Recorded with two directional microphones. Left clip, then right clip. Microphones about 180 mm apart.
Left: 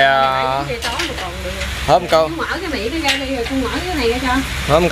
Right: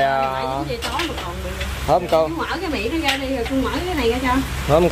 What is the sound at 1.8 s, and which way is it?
Speech, 5° left (ahead or behind).